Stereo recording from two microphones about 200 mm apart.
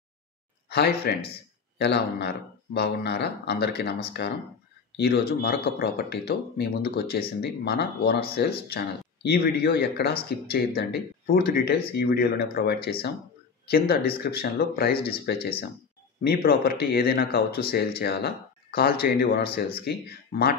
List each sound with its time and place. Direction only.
0.7 s speech: 50° left (ahead or behind)